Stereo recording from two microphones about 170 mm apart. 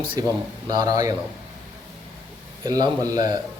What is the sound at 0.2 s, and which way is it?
Speech, 25° right (ahead or behind).